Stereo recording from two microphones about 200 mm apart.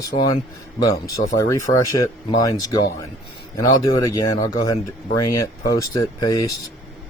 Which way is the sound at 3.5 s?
15° left (ahead or behind).